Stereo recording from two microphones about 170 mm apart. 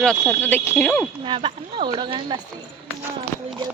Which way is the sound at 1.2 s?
30° right (ahead or behind).